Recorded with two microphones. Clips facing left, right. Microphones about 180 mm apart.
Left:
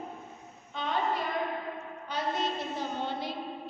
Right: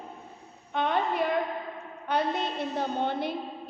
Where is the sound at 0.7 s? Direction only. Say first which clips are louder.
Right 6 dB; 60° right (ahead or behind).